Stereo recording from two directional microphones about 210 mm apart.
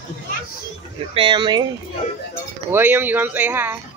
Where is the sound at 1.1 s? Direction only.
20° right (ahead or behind).